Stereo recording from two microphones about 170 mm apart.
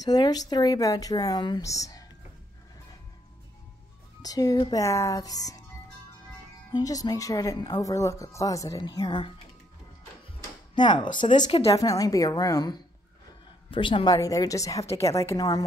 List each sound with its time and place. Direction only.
0.0 s a woman's voice: 25° left (ahead or behind)
4.2 s a woman's voice: 20° left (ahead or behind)
6.7 s a woman's voice: 20° left (ahead or behind)
10.8 s a woman's voice: 25° left (ahead or behind)